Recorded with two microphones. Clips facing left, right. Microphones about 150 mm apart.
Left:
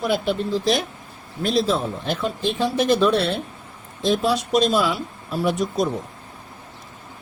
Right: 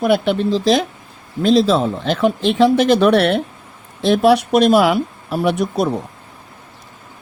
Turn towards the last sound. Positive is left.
turn(degrees=-65)  # may be behind; listen again after turning